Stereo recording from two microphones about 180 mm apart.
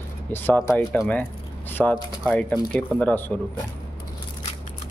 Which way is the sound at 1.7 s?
5° left (ahead or behind).